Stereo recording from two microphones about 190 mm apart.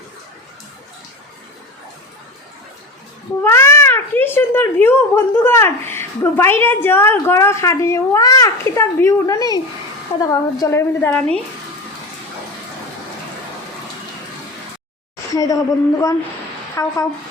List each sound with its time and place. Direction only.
3.4 s speech: 15° left (ahead or behind)
15.3 s a woman's voice: 20° left (ahead or behind)